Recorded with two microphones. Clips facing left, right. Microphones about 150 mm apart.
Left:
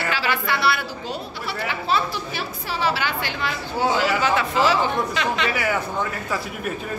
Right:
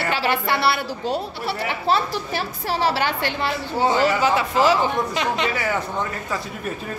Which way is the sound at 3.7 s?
5° left (ahead or behind).